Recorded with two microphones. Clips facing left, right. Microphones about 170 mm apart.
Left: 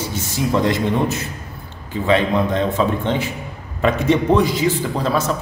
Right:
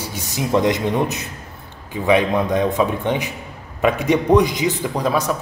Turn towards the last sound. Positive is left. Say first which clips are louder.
# even
turn(degrees=-10)  # may be behind; listen again after turning